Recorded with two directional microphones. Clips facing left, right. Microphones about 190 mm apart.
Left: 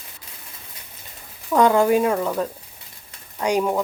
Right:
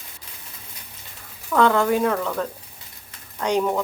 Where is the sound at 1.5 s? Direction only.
15° left (ahead or behind).